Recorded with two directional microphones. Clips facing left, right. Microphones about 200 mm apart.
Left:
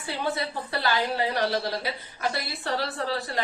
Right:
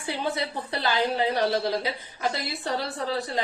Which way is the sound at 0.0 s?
20° right (ahead or behind).